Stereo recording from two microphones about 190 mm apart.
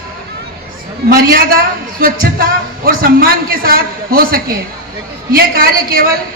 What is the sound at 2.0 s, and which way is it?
Speech, 50° right (ahead or behind).